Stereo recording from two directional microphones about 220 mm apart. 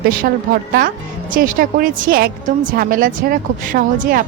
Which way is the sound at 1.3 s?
40° right (ahead or behind).